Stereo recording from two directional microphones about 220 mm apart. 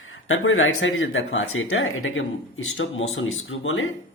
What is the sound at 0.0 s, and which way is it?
Speech, 65° left (ahead or behind).